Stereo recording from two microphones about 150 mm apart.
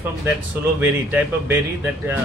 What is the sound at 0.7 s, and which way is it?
Speech, 10° right (ahead or behind).